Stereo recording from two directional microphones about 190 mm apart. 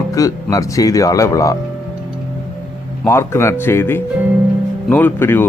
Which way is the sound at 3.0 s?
15° left (ahead or behind).